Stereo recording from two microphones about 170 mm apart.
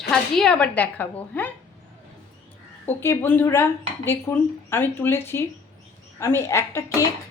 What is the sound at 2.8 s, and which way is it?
Speech, 10° left (ahead or behind).